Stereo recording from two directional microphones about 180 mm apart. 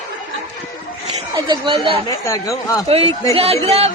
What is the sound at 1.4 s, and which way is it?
Speech, 25° right (ahead or behind).